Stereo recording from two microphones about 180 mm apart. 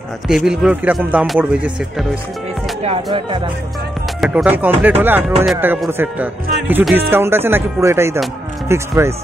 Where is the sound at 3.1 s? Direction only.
25° right (ahead or behind).